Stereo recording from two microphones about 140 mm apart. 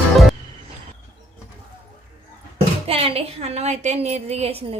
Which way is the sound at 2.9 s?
45° right (ahead or behind).